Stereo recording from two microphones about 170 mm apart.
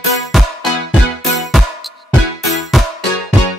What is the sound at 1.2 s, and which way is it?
Music, centre (ahead or behind).